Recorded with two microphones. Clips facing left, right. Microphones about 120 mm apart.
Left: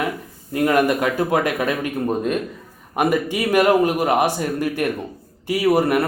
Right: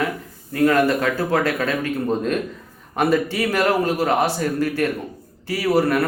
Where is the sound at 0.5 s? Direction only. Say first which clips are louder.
Even; 15° left (ahead or behind).